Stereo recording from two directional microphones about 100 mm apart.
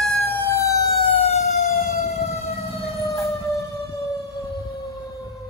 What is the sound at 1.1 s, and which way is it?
Emergency vehicle, 90° left.